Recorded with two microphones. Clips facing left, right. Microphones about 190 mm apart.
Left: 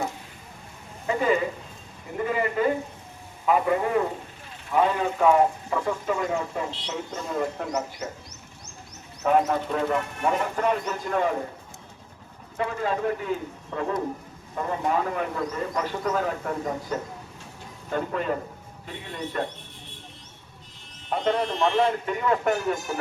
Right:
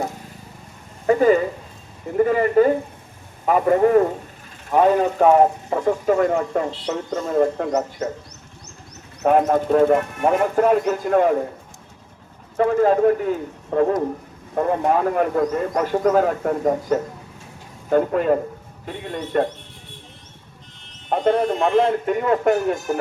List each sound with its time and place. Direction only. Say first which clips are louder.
1.0 s a man's voice: right 8 dB; 45° right (ahead or behind)
6.1 s speech: right 8 dB; 55° right (ahead or behind)
7.1 s a man's voice: right 10 dB; 45° right (ahead or behind)
9.2 s a man's voice: right 5 dB; 55° right (ahead or behind)
12.5 s a man's voice: right 11 dB; 50° right (ahead or behind)
21.1 s a man's voice: right 6 dB; 45° right (ahead or behind)